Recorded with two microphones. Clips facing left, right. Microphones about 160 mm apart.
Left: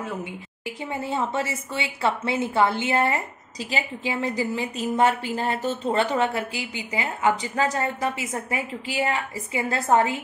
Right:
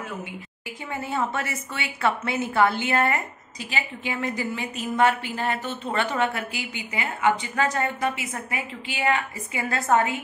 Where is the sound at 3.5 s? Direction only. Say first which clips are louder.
Left 3 dB; 40° left (ahead or behind).